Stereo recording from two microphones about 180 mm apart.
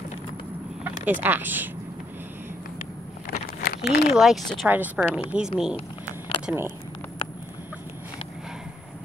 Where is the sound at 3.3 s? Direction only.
55° left (ahead or behind).